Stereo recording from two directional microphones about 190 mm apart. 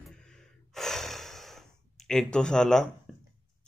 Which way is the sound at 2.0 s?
5° left (ahead or behind).